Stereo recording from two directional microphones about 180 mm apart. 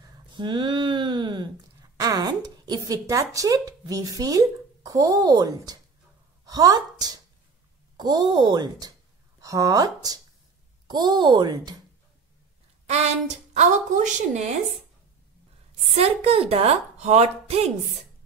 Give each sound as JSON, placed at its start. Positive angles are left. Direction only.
{"t": 0.3, "sound": "a sound", "side_deg": -25}
{"t": 2.0, "sound": "a woman's voice", "side_deg": -20}
{"t": 13.5, "sound": "a woman's voice", "side_deg": -40}
{"t": 15.8, "sound": "a woman's voice", "side_deg": -35}